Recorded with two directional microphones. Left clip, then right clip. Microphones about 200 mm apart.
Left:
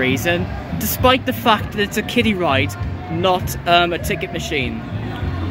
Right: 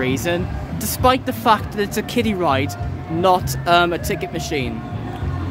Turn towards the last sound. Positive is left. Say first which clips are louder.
# left 2 dB
turn(degrees=-15)  # may be behind; listen again after turning